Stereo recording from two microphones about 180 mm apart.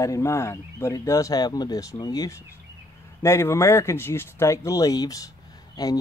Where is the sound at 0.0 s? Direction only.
15° left (ahead or behind).